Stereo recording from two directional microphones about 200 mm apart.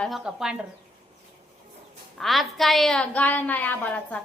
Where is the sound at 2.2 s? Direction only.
Centre (ahead or behind).